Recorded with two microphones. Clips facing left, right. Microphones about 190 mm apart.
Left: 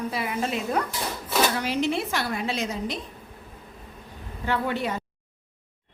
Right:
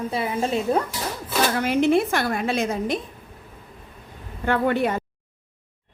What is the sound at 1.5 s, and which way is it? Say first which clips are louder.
Speech: right 6 dB; 55° right (ahead or behind).